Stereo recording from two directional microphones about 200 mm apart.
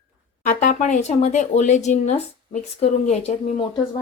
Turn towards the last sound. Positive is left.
turn(degrees=30)  # may be behind; listen again after turning